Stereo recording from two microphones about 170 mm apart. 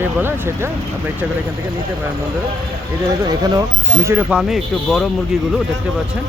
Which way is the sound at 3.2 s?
25° right (ahead or behind).